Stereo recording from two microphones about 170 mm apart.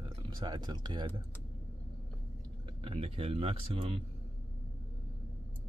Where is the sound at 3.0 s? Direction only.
35° right (ahead or behind).